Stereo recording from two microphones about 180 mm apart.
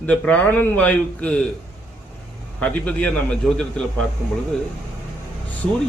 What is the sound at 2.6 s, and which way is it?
A man's voice, 5° left (ahead or behind).